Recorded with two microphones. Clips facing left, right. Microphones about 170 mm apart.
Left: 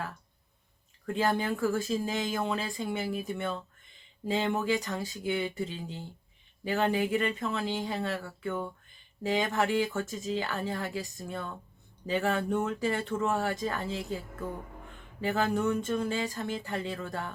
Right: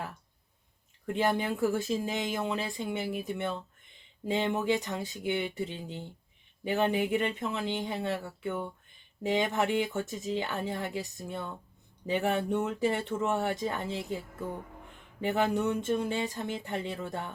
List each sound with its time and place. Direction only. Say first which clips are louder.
1.0 s speech: even; 20° right (ahead or behind)
15.2 s speech: even; 20° right (ahead or behind)